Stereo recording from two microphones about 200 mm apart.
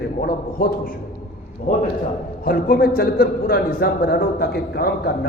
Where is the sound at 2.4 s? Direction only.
45° left (ahead or behind).